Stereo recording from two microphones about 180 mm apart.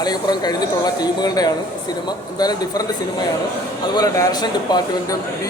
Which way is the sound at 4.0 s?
20° left (ahead or behind).